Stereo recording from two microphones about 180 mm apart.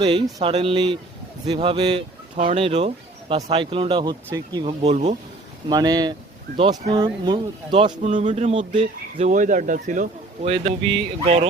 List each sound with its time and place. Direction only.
0.3 s speech: 35° right (ahead or behind)
4.8 s speech: 40° right (ahead or behind)
5.6 s speech: 20° right (ahead or behind); by 10.5 s 45° right (ahead or behind)
10.5 s speech: 30° right (ahead or behind)